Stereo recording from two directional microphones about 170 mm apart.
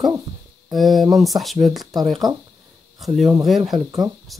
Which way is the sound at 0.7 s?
Centre (ahead or behind).